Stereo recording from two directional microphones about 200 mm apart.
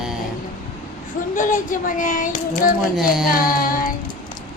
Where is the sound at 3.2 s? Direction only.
45° left (ahead or behind).